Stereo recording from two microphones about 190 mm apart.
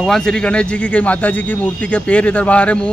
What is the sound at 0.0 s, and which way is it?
Speech, centre (ahead or behind).